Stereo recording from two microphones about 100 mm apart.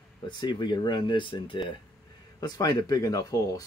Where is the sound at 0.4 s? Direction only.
50° left (ahead or behind).